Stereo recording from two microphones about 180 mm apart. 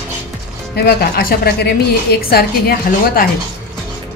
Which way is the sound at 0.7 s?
60° left (ahead or behind).